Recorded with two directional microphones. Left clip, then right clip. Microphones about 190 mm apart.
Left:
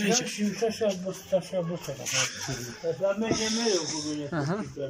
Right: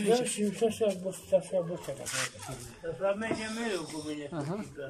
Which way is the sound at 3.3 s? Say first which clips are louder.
Left 7 dB; 5° right (ahead or behind).